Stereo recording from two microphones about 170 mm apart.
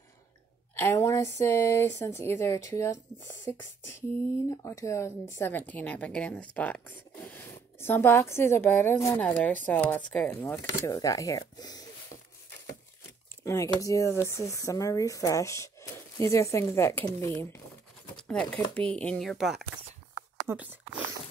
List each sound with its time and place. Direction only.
0.7 s a woman's voice: 15° left (ahead or behind)
13.4 s a woman's voice: 15° left (ahead or behind)
18.1 s speech: 5° left (ahead or behind); by 20.8 s 10° right (ahead or behind)